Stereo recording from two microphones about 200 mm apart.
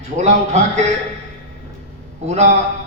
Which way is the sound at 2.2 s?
35° right (ahead or behind).